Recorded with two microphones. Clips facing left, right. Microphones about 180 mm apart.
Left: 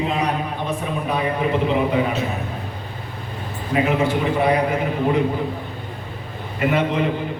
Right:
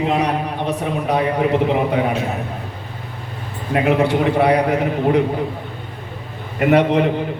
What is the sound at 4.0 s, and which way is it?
A man's voice, 70° right (ahead or behind).